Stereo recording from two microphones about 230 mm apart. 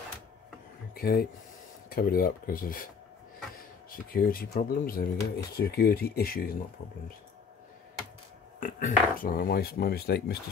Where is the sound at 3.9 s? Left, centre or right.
Left.